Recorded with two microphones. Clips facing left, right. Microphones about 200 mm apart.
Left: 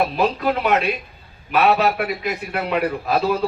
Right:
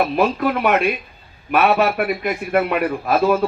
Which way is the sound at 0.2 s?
60° right (ahead or behind).